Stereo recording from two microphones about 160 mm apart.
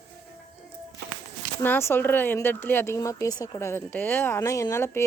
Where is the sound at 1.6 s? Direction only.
15° left (ahead or behind).